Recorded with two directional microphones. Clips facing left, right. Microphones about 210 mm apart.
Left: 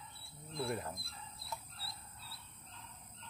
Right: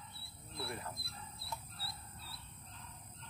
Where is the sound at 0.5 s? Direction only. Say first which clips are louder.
Left 5 dB; 35° left (ahead or behind).